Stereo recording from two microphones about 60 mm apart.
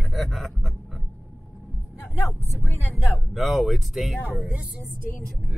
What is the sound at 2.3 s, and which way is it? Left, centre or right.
Speech, left.